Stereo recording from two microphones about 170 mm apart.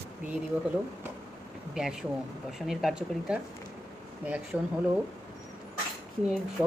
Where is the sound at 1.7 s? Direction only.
5° right (ahead or behind).